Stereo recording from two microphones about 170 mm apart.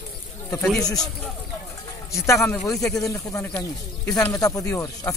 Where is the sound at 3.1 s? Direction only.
15° left (ahead or behind).